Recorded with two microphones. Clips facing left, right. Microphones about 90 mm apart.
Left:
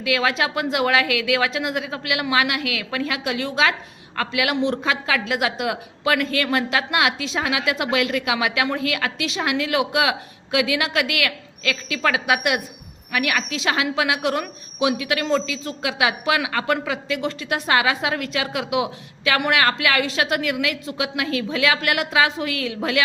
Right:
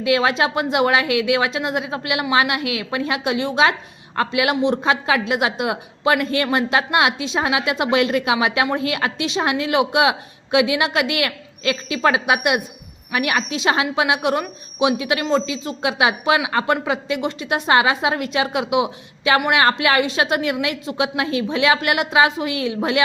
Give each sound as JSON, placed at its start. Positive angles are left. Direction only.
{"t": 0.0, "sound": "speech", "side_deg": -30}